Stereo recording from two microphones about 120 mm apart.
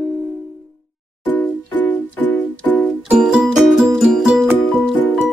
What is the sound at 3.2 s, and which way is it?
Music, 5° right (ahead or behind).